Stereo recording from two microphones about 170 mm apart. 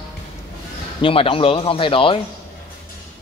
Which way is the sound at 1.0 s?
30° left (ahead or behind).